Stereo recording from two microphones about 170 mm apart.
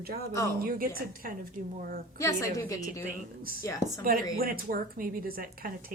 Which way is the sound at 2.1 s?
20° left (ahead or behind).